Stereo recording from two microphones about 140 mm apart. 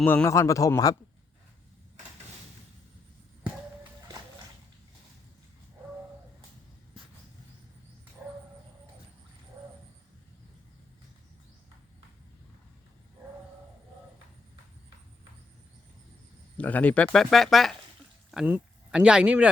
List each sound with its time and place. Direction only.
0.0 s a man's voice: 15° left (ahead or behind)
16.6 s speech: 10° left (ahead or behind); by 19.5 s 10° right (ahead or behind)